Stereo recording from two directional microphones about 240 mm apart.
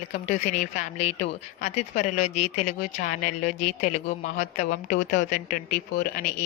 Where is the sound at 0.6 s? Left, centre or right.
Left.